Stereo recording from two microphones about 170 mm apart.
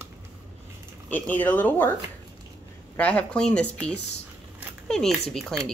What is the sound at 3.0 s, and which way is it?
Speech, 5° left (ahead or behind).